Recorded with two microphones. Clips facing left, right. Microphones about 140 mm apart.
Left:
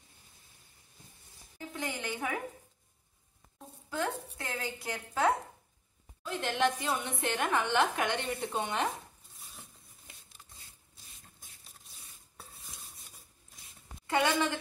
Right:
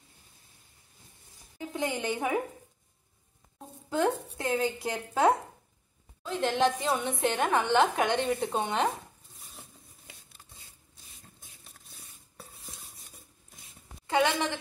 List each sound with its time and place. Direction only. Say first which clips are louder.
1.7 s a woman's voice: right 6 dB; 25° right (ahead or behind)
3.9 s a woman's voice: right 7 dB; 25° right (ahead or behind)
14.0 s a sound: right 3 dB; 20° right (ahead or behind)